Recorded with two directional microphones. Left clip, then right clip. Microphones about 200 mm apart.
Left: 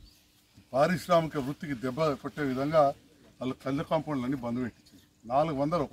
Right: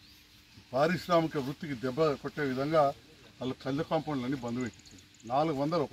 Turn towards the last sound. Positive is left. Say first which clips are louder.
# left 2 dB
turn(degrees=15)  # may be behind; listen again after turning